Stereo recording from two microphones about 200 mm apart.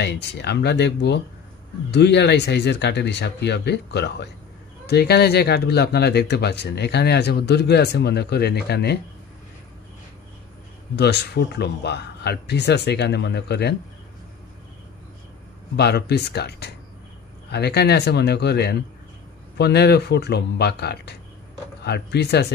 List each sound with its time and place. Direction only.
0.0 s speech: 55° left (ahead or behind)
11.0 s speech: 55° left (ahead or behind)
15.7 s speech: 55° left (ahead or behind)